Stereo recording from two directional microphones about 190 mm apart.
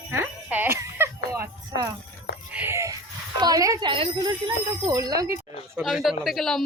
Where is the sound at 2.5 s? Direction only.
15° right (ahead or behind).